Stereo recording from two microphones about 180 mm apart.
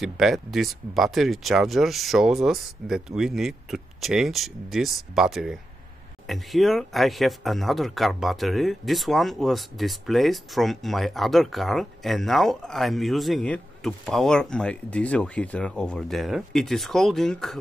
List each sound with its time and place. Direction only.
0.0 s speech: centre (ahead or behind)